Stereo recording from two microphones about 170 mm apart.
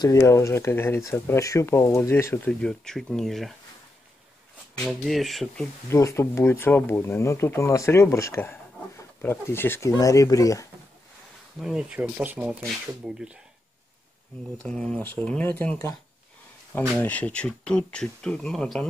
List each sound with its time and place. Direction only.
0.0 s speech: 20° left (ahead or behind); by 3.5 s centre (ahead or behind)
4.7 s speech: centre (ahead or behind)
5.9 s speech: 15° left (ahead or behind)
11.6 s speech: 5° right (ahead or behind)
14.6 s speech: 5° left (ahead or behind)
17.0 s speech: 10° left (ahead or behind)